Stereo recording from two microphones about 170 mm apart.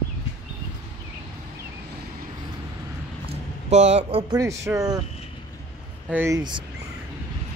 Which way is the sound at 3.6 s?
40° right (ahead or behind).